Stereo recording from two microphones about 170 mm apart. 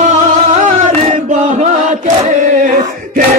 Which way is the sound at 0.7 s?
50° right (ahead or behind).